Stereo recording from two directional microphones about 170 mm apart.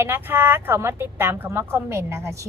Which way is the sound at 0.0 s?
10° right (ahead or behind).